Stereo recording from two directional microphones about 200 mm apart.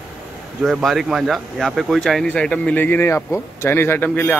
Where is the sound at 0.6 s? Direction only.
Centre (ahead or behind).